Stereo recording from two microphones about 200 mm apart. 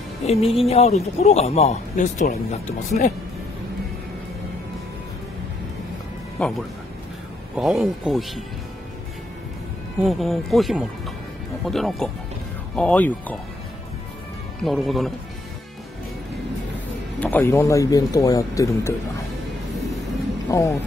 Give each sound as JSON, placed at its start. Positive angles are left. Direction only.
{"t": 0.2, "sound": "speech", "side_deg": 30}
{"t": 6.4, "sound": "speech", "side_deg": 5}
{"t": 10.0, "sound": "speech", "side_deg": 0}
{"t": 14.6, "sound": "speech", "side_deg": 0}
{"t": 17.2, "sound": "speech", "side_deg": 10}